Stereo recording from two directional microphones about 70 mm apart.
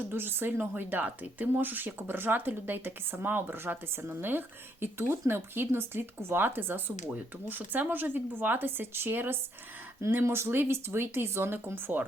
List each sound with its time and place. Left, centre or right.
0.0 s speech: right